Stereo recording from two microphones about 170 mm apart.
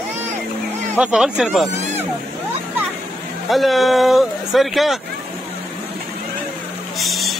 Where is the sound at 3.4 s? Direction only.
Centre (ahead or behind).